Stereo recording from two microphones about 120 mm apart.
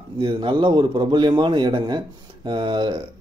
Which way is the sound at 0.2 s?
45° right (ahead or behind).